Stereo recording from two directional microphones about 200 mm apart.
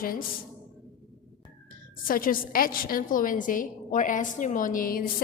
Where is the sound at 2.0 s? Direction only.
45° left (ahead or behind).